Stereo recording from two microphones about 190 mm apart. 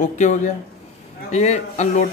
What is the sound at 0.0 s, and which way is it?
A man's voice, 40° left (ahead or behind).